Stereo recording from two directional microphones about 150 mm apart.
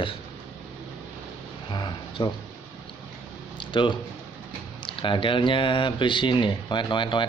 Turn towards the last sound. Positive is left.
turn(degrees=30)  # may be behind; listen again after turning